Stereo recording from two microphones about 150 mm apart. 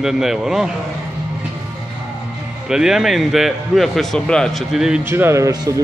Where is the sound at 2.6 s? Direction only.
5° right (ahead or behind).